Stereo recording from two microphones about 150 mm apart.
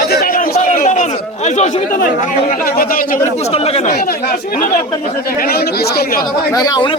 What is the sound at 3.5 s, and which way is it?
Speech, 45° left (ahead or behind).